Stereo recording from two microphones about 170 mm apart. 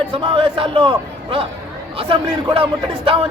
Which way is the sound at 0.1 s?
30° right (ahead or behind).